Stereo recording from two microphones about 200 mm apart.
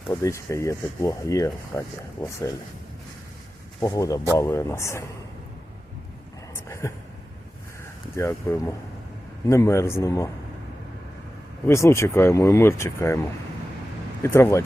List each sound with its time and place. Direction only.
0.1 s speech: 15° left (ahead or behind)
3.8 s speech: 15° left (ahead or behind)
6.5 s a sound: 15° left (ahead or behind)
8.1 s speech: 15° left (ahead or behind)
11.6 s speech: 15° left (ahead or behind)
14.2 s speech: 15° left (ahead or behind)